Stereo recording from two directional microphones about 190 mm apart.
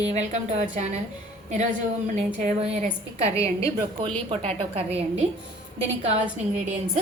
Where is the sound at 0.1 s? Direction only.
35° right (ahead or behind).